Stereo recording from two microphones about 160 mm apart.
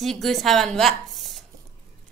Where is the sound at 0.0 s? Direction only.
Centre (ahead or behind).